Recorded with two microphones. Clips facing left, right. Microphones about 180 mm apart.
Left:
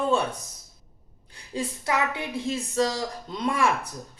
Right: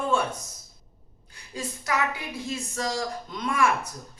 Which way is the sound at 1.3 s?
30° left (ahead or behind).